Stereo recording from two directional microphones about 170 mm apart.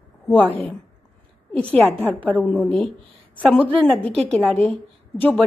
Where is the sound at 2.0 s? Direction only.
10° right (ahead or behind).